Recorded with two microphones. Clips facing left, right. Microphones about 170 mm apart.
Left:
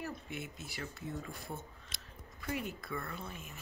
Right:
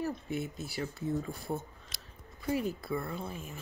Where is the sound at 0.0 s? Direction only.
35° right (ahead or behind).